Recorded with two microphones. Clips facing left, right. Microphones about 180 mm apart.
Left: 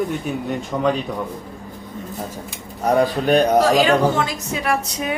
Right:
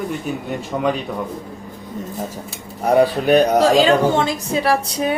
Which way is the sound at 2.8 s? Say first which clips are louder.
Right 2 dB; 10° right (ahead or behind).